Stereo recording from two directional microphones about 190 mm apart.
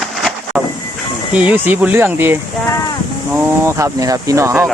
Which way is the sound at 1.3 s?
5° right (ahead or behind).